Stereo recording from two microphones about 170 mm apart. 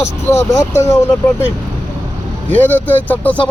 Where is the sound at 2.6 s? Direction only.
10° left (ahead or behind).